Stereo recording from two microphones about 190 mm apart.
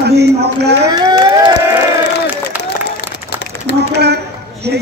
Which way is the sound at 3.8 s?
60° right (ahead or behind).